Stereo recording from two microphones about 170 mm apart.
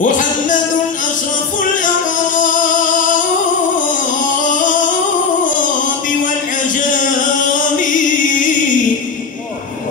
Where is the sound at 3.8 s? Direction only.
50° left (ahead or behind).